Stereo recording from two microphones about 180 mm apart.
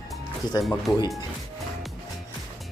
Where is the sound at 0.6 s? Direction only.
Centre (ahead or behind).